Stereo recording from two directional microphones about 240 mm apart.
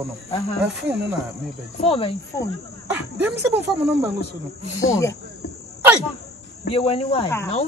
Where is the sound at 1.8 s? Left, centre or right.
Left.